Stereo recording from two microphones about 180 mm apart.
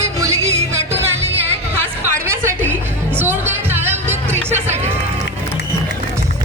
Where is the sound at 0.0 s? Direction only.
20° right (ahead or behind).